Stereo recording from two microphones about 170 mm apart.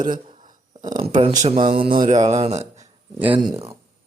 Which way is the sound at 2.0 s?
40° right (ahead or behind).